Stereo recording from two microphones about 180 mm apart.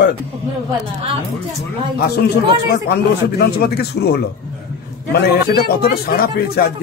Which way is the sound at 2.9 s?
60° left (ahead or behind).